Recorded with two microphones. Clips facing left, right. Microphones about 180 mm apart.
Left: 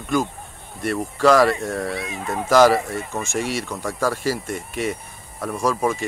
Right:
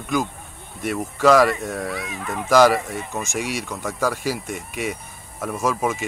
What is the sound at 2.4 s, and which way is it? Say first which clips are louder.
Speech: left 1 dB; centre (ahead or behind).